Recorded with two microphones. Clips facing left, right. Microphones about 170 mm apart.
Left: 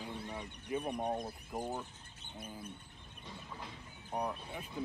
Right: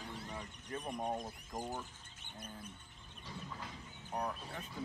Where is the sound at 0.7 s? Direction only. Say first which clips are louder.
Left 4 dB; 10° left (ahead or behind).